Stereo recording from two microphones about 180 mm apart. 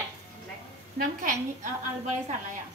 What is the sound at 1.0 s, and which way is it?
Speech, 45° right (ahead or behind).